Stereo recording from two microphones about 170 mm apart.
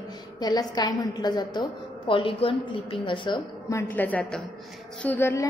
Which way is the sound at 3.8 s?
10° left (ahead or behind).